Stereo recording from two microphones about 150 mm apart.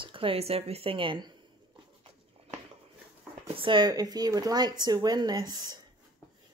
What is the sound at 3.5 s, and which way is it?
Speech, 35° right (ahead or behind).